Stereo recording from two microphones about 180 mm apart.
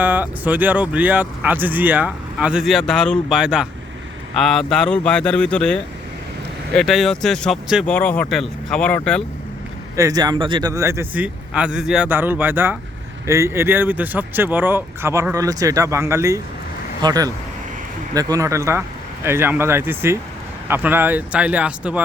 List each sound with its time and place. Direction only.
0.0 s a man's voice: 10° right (ahead or behind)
9.9 s speech: 20° right (ahead or behind)